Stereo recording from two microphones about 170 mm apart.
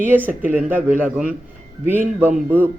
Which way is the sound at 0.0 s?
10° right (ahead or behind).